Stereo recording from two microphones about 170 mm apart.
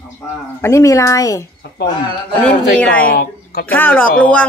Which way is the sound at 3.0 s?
60° left (ahead or behind).